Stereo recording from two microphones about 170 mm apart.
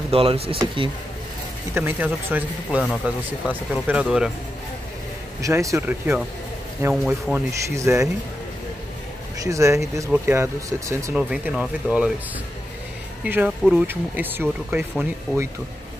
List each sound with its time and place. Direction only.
0.1 s speech: 35° right (ahead or behind)
1.7 s speech: 10° right (ahead or behind)
5.4 s speech: 20° right (ahead or behind)
9.4 s speech: 20° right (ahead or behind)
11.1 s speech: 5° right (ahead or behind)
13.2 s speech: 10° right (ahead or behind)